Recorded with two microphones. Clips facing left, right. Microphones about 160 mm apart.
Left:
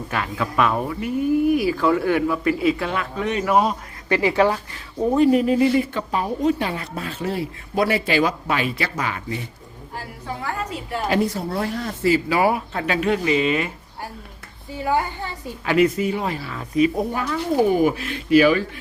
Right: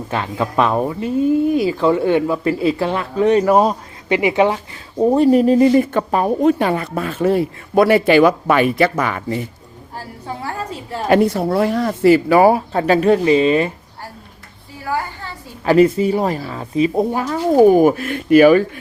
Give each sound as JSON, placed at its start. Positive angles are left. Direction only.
{"t": 0.1, "sound": "speech", "side_deg": -30}
{"t": 4.1, "sound": "speech", "side_deg": -20}
{"t": 5.0, "sound": "a woman's voice", "side_deg": -35}
{"t": 11.1, "sound": "speech", "side_deg": -65}
{"t": 12.4, "sound": "speech", "side_deg": -35}
{"t": 14.8, "sound": "a woman's voice", "side_deg": 20}
{"t": 15.6, "sound": "speech", "side_deg": -35}